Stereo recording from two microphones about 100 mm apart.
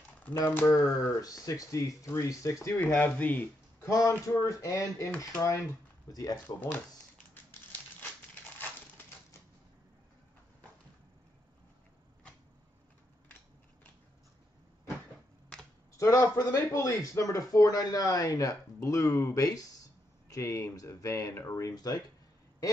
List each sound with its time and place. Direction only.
0.6 s speech: 25° left (ahead or behind)
1.2 s speech: 35° left (ahead or behind); by 3.4 s 15° left (ahead or behind)
3.8 s speech: 35° left (ahead or behind)
6.1 s speech: 40° left (ahead or behind)
6.4 s speech: 15° left (ahead or behind)
16.0 s a man's voice: 30° left (ahead or behind)